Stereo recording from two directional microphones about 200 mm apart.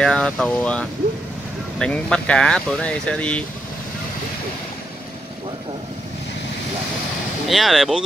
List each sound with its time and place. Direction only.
0.0 s speech: 5° left (ahead or behind)
7.4 s speech: centre (ahead or behind)